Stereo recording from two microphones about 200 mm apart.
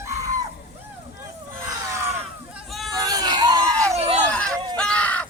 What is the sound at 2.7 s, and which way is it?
Hubbub, centre (ahead or behind).